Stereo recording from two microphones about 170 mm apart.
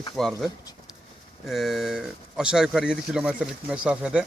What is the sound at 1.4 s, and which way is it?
Speech, centre (ahead or behind).